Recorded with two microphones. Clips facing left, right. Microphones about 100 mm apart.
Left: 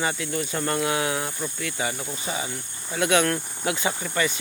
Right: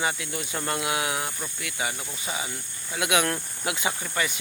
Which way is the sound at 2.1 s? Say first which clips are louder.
Left 3 dB; 35° left (ahead or behind).